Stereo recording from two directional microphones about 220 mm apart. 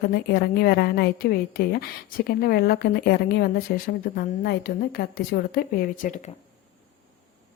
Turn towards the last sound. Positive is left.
turn(degrees=35)  # may be behind; listen again after turning